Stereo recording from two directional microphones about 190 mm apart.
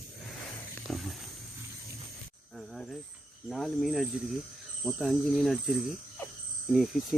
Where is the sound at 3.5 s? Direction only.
Centre (ahead or behind).